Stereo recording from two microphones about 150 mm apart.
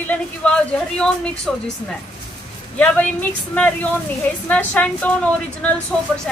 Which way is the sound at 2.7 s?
10° left (ahead or behind).